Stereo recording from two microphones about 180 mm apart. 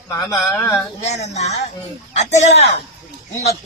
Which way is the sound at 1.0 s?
40° left (ahead or behind).